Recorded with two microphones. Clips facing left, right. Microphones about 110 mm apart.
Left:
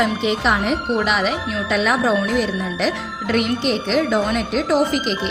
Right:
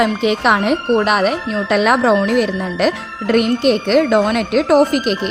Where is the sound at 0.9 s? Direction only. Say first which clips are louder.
Right 6 dB; 50° right (ahead or behind).